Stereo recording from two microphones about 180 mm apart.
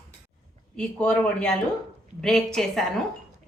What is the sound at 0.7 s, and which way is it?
A woman's voice, 5° left (ahead or behind).